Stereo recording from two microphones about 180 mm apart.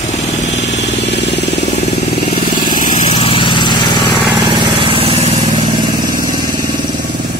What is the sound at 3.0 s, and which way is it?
Vehicle, 30° left (ahead or behind).